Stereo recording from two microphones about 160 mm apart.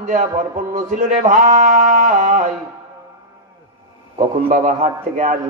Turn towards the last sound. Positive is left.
turn(degrees=-55)  # may be behind; listen again after turning